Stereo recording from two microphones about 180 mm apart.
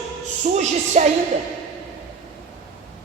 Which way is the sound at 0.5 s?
40° right (ahead or behind).